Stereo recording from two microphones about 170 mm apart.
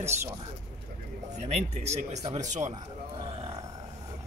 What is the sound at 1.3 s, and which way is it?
Speech, 40° right (ahead or behind).